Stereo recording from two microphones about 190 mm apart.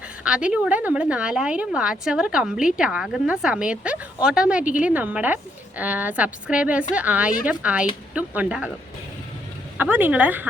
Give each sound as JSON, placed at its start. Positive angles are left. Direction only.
{"t": 0.3, "sound": "a woman's voice", "side_deg": -5}
{"t": 9.7, "sound": "speech", "side_deg": -10}